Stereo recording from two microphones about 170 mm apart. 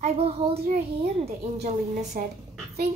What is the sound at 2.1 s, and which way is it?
Speech, 55° right (ahead or behind).